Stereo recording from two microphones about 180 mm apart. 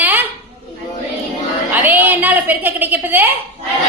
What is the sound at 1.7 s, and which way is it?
A woman's voice, 10° right (ahead or behind).